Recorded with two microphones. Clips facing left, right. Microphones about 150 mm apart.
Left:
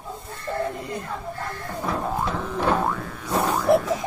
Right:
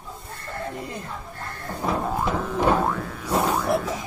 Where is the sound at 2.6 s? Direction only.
5° right (ahead or behind).